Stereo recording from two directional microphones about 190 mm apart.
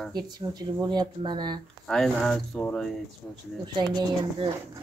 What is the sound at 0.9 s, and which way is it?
Speech, 20° right (ahead or behind).